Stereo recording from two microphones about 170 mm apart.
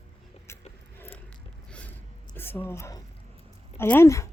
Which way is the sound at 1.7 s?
5° left (ahead or behind).